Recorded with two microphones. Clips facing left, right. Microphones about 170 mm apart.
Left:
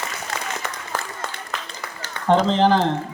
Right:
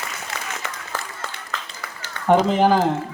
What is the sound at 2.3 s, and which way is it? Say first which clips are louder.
Speech: right 1 dB; 10° right (ahead or behind).